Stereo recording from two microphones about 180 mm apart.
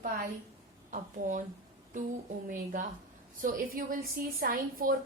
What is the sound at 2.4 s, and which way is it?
A woman's voice, 50° right (ahead or behind).